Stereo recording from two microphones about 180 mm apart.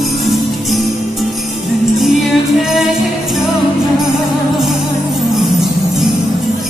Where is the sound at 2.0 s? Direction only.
Centre (ahead or behind).